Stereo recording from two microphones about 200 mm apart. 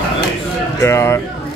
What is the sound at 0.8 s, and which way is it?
Speech, 15° left (ahead or behind).